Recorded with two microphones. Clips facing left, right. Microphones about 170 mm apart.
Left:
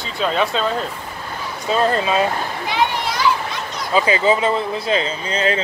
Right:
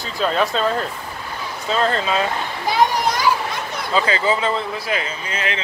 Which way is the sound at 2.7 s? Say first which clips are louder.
Right 4 dB; 40° right (ahead or behind).